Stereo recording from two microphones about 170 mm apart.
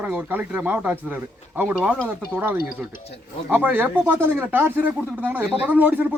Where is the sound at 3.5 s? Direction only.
10° right (ahead or behind).